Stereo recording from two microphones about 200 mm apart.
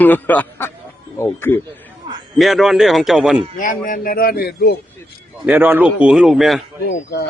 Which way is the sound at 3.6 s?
40° left (ahead or behind).